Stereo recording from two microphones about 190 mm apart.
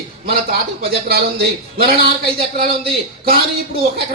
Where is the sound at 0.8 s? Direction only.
55° right (ahead or behind).